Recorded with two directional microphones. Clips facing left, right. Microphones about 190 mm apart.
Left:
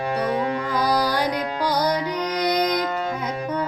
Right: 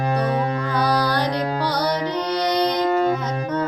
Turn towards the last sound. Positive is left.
turn(degrees=-35)  # may be behind; listen again after turning